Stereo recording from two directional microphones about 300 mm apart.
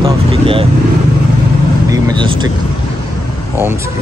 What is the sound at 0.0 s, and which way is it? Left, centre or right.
Vehicle, centre.